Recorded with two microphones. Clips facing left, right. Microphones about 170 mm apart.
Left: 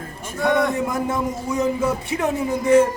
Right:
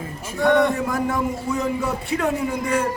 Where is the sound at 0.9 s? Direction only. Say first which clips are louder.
Even; 20° left (ahead or behind).